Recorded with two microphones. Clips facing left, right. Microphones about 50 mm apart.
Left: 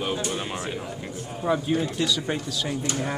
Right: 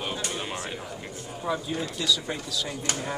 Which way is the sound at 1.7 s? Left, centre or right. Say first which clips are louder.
Left 4 dB; left.